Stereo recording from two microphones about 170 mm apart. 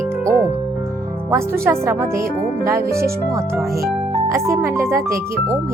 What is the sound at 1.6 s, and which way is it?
Speech, 15° right (ahead or behind).